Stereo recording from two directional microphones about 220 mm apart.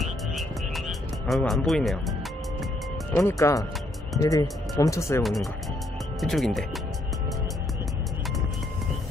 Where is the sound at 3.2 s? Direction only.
10° left (ahead or behind).